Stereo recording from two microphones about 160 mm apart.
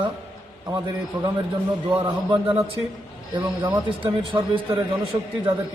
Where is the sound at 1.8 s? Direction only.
30° right (ahead or behind).